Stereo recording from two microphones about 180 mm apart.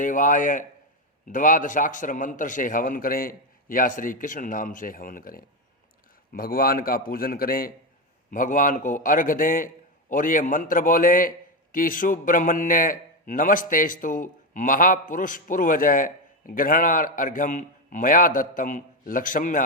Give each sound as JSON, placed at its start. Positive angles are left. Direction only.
{"t": 0.0, "sound": "a man's voice", "side_deg": 45}